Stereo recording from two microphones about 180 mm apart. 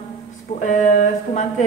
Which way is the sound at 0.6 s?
40° left (ahead or behind).